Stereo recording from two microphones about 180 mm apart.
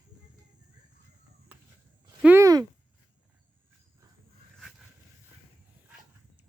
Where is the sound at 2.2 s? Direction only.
15° right (ahead or behind).